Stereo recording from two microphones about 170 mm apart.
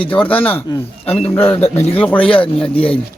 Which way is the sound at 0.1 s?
10° left (ahead or behind).